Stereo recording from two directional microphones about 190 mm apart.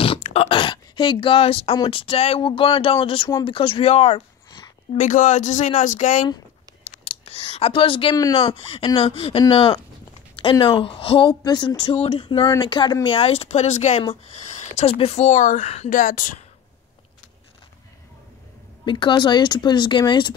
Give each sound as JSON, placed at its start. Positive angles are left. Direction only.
{"t": 0.2, "sound": "speech", "side_deg": 30}
{"t": 15.9, "sound": "speech", "side_deg": 45}
{"t": 18.9, "sound": "speech", "side_deg": 25}